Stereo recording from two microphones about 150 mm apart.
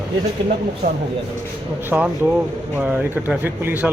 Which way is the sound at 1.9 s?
10° right (ahead or behind).